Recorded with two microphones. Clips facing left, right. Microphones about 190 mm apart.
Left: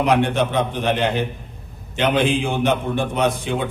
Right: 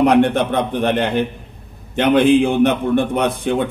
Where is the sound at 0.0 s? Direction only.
55° right (ahead or behind).